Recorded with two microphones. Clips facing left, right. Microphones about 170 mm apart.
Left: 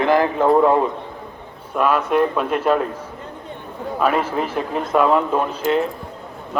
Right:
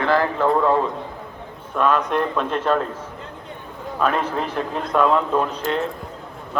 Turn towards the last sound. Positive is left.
turn(degrees=5)  # may be behind; listen again after turning